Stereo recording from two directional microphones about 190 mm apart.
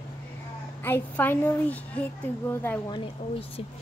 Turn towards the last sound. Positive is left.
turn(degrees=30)  # may be behind; listen again after turning